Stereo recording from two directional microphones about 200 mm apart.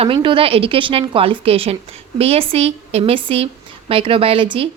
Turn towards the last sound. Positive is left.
turn(degrees=-25)  # may be behind; listen again after turning